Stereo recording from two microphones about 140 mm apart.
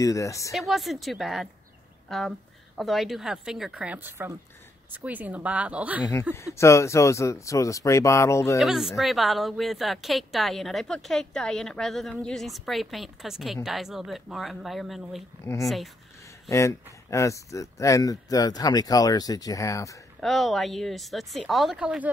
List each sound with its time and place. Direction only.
0.0 s speech: 25° left (ahead or behind)
0.5 s a woman's voice: centre (ahead or behind)
6.3 s speech: 20° left (ahead or behind)
8.5 s speech: centre (ahead or behind)
16.4 s speech: 20° left (ahead or behind)
20.2 s speech: centre (ahead or behind)